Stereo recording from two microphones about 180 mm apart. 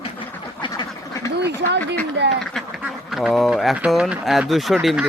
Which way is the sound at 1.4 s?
70° right (ahead or behind).